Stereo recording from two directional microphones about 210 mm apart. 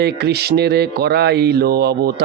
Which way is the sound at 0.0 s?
50° right (ahead or behind).